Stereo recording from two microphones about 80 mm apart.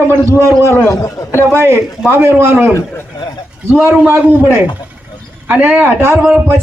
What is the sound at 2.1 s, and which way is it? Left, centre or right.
A man's voice, right.